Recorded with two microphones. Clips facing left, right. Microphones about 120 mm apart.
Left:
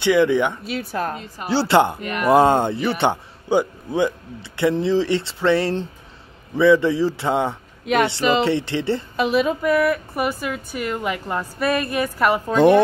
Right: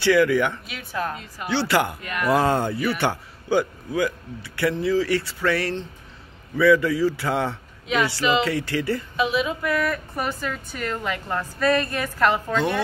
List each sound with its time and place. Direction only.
0.0 s speech: 20° left (ahead or behind)
0.7 s speech: 40° left (ahead or behind); by 7.5 s 20° left (ahead or behind)
7.8 s speech: 55° left (ahead or behind)
8.3 s speech: 30° left (ahead or behind)
9.1 s a woman's voice: 45° left (ahead or behind)
9.8 s a woman's voice: 10° left (ahead or behind)
12.5 s speech: 55° left (ahead or behind)